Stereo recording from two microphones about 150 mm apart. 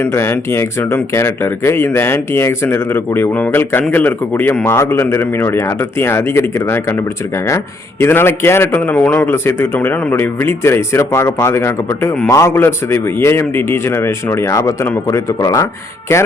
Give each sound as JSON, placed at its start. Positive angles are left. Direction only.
{"t": 0.0, "sound": "a man's voice", "side_deg": 15}